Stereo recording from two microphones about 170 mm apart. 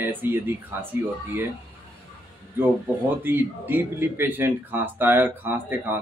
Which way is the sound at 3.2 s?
10° right (ahead or behind).